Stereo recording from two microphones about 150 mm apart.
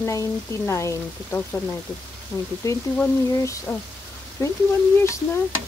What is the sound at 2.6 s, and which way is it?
Speech, 20° left (ahead or behind).